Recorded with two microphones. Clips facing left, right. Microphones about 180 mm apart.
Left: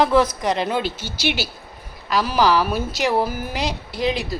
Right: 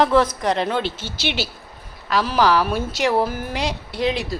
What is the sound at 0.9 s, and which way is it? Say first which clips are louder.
Speech: even; 25° right (ahead or behind).